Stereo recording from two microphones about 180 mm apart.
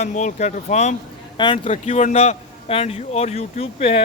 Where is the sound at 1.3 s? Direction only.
30° left (ahead or behind).